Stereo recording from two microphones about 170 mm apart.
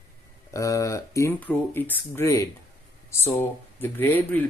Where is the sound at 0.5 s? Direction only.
20° left (ahead or behind).